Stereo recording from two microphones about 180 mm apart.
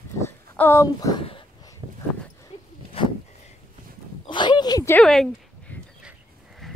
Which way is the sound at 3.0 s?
30° left (ahead or behind).